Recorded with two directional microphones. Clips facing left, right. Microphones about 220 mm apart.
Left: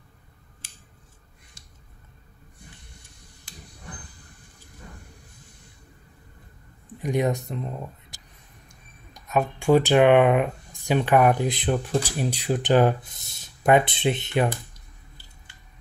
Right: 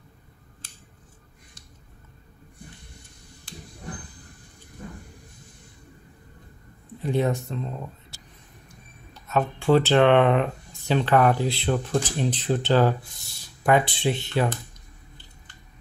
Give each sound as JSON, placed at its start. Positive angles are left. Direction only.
{"t": 7.0, "sound": "speech", "side_deg": 15}